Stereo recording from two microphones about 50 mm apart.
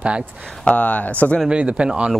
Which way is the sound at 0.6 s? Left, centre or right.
Left.